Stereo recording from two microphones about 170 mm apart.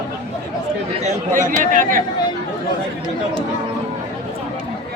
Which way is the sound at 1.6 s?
50° right (ahead or behind).